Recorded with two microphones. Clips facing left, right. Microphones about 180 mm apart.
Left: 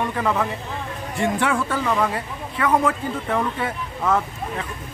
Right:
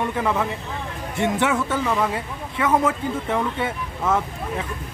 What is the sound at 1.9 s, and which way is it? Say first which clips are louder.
A man's voice: left 1 dB; 10° right (ahead or behind).